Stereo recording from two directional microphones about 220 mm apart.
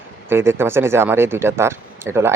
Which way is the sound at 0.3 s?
10° right (ahead or behind).